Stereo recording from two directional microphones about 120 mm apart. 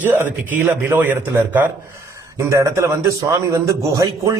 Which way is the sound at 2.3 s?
25° right (ahead or behind).